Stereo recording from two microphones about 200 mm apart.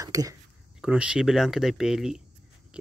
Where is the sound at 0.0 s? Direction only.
15° right (ahead or behind).